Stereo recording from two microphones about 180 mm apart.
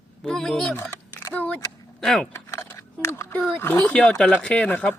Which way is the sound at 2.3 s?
15° left (ahead or behind).